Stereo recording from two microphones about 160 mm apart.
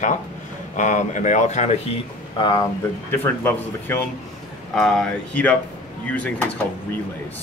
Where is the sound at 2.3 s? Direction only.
30° left (ahead or behind).